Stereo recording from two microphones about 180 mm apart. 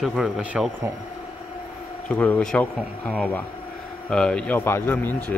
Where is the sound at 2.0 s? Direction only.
10° left (ahead or behind).